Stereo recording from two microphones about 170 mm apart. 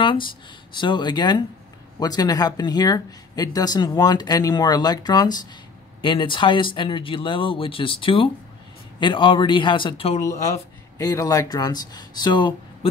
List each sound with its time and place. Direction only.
0.0 s speech: 30° left (ahead or behind)
11.0 s speech: 20° left (ahead or behind)